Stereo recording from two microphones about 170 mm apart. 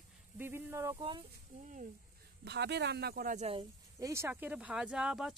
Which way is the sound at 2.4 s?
80° right.